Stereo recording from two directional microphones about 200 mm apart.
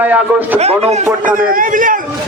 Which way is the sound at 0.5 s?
30° right (ahead or behind).